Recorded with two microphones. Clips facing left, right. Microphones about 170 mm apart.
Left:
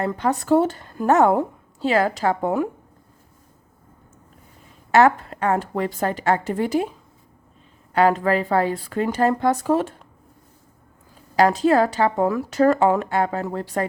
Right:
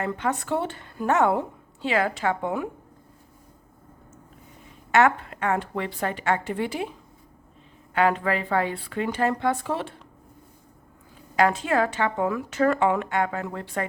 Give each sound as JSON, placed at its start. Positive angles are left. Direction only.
{"t": 0.0, "sound": "a woman's voice", "side_deg": 35}
{"t": 4.9, "sound": "a woman's voice", "side_deg": 35}
{"t": 7.9, "sound": "a woman's voice", "side_deg": 40}
{"t": 11.3, "sound": "a woman's voice", "side_deg": 35}